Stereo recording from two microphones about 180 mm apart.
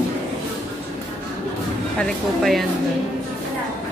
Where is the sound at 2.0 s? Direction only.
Centre (ahead or behind).